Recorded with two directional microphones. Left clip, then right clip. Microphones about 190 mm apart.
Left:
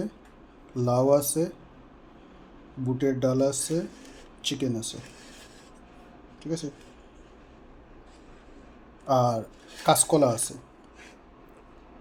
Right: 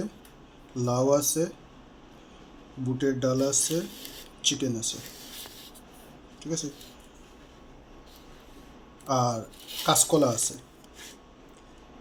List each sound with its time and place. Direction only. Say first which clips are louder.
0.7 s speech: left 2 dB; 15° left (ahead or behind)
2.8 s speech: left 1 dB; 15° left (ahead or behind)
6.4 s speech: even; 10° left (ahead or behind)
9.0 s speech: left 3 dB; 10° left (ahead or behind)